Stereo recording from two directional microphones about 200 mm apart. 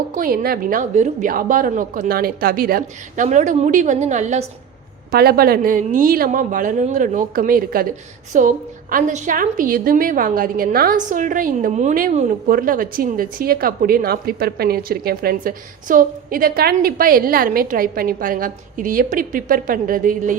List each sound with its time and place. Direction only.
0.1 s a woman's voice: 45° right (ahead or behind)
5.1 s a woman's voice: 50° right (ahead or behind)